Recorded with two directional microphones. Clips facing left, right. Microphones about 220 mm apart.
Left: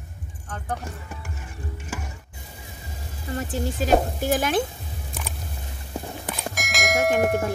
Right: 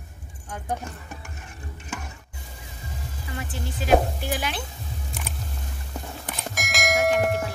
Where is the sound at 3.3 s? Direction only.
45° left (ahead or behind).